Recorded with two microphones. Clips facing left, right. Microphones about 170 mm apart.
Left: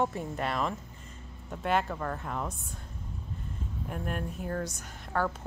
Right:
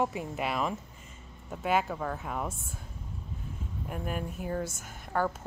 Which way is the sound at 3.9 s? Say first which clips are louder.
Even; 5° right (ahead or behind).